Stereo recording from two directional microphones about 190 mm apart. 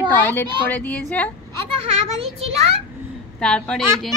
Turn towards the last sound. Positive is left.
turn(degrees=5)  # may be behind; listen again after turning